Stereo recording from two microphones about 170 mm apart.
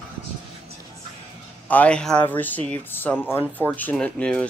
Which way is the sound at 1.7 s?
10° left (ahead or behind).